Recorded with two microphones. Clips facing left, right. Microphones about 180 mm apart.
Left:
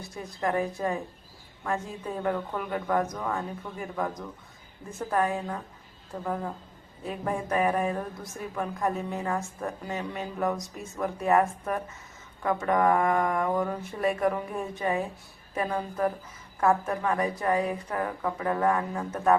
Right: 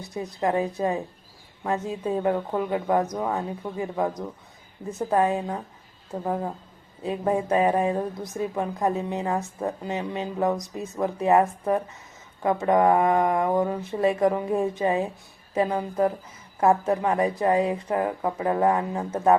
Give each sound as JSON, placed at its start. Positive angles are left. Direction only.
{"t": 0.0, "sound": "a woman's voice", "side_deg": -20}